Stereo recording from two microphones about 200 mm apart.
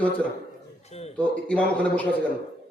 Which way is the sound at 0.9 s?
30° left (ahead or behind).